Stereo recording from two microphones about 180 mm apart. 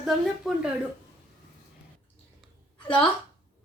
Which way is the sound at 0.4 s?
5° right (ahead or behind).